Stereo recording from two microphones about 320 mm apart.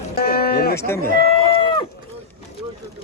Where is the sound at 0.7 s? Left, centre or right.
Centre.